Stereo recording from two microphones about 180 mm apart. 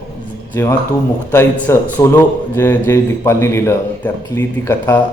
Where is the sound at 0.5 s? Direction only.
15° left (ahead or behind).